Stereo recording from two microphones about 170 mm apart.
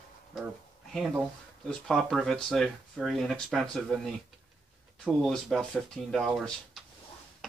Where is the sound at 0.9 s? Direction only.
10° right (ahead or behind).